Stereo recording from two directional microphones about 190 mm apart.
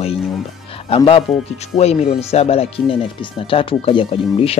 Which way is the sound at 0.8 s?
30° left (ahead or behind).